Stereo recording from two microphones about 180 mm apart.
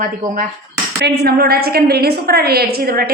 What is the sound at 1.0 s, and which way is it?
A woman's voice, 65° right (ahead or behind).